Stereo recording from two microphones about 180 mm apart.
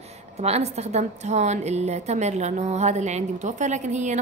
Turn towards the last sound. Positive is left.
turn(degrees=-40)  # may be behind; listen again after turning